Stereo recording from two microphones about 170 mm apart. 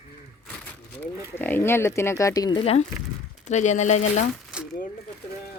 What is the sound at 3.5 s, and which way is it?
Speech, 45° left (ahead or behind).